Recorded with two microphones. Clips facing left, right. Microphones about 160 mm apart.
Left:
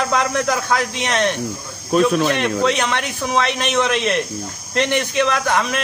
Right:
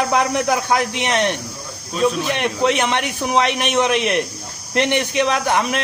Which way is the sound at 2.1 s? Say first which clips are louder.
Left 5 dB; 55° left (ahead or behind).